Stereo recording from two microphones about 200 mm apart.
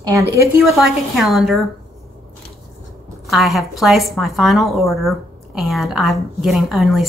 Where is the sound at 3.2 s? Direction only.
Centre (ahead or behind).